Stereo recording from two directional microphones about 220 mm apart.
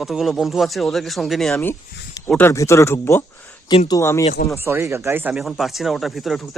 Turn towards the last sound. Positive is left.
turn(degrees=0)  # may be behind; listen again after turning